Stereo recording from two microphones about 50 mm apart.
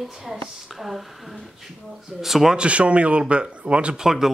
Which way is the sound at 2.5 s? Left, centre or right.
Right.